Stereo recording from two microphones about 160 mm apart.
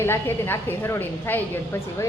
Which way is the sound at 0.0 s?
15° left (ahead or behind).